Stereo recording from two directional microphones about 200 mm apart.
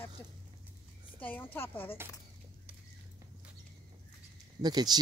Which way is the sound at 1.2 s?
10° left (ahead or behind).